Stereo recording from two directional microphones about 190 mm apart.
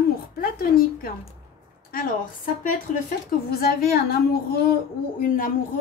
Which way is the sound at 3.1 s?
50° left (ahead or behind).